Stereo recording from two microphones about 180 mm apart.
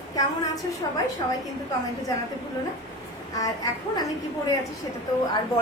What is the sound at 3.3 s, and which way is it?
Speech, 20° left (ahead or behind).